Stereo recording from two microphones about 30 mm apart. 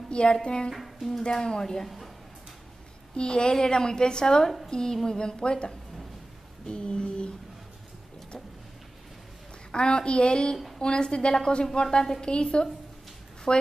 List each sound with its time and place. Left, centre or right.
0.1 s a woman's voice: left
3.2 s a woman's voice: left
6.6 s a sound: left
9.7 s a woman's voice: left
12.2 s a woman's voice: left